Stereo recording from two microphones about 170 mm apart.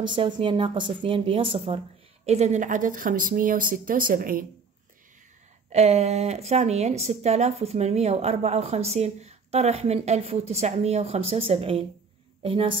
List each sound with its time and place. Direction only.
0.0 s speech: 25° right (ahead or behind); by 4.5 s 55° right (ahead or behind)
5.7 s speech: 40° right (ahead or behind)